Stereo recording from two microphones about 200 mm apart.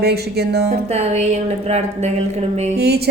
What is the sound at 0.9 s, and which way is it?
Speech, 35° right (ahead or behind).